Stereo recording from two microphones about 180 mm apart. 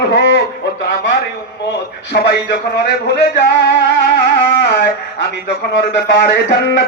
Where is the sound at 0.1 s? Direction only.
70° left (ahead or behind).